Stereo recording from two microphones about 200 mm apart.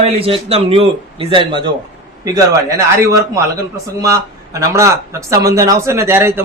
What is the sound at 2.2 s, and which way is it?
A man's voice, 15° right (ahead or behind).